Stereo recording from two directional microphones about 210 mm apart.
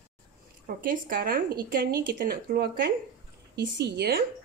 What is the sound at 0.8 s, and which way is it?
Speech, 45° right (ahead or behind).